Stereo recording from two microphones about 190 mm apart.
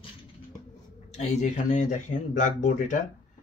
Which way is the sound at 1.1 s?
35° left (ahead or behind).